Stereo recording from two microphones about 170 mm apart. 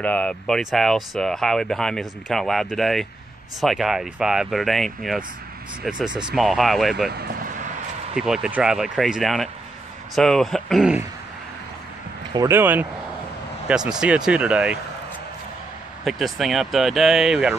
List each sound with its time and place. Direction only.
0.0 s speech: 5° left (ahead or behind)
7.1 s speech: 65° right (ahead or behind)
8.2 s speech: 5° right (ahead or behind)
12.4 s speech: 15° right (ahead or behind)
16.0 s speech: centre (ahead or behind)